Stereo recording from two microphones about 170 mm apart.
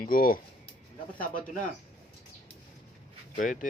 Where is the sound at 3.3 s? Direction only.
50° left (ahead or behind).